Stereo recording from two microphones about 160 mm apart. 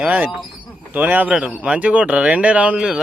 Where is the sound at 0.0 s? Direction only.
10° right (ahead or behind).